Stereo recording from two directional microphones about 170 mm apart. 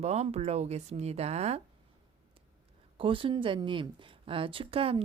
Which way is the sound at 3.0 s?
30° right (ahead or behind).